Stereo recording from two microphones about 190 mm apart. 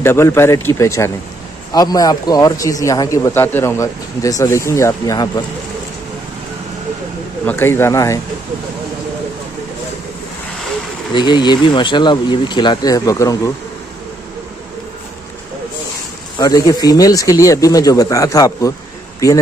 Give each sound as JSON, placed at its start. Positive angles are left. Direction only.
{"t": 0.0, "sound": "a man's voice", "side_deg": 15}
{"t": 7.4, "sound": "a man's voice", "side_deg": 10}
{"t": 11.1, "sound": "speech", "side_deg": 25}
{"t": 16.3, "sound": "a man's voice", "side_deg": 20}